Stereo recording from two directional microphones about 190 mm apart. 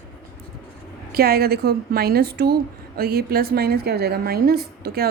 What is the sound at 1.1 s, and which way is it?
A woman's voice, 55° right (ahead or behind).